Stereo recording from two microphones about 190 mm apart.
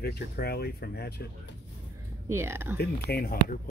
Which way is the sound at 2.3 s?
15° right (ahead or behind).